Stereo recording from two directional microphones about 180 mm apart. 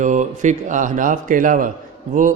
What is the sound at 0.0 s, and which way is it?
A man's voice, 40° right (ahead or behind).